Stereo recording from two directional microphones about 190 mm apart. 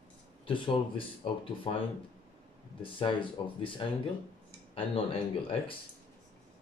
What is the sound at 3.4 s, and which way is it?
Speech, 25° left (ahead or behind).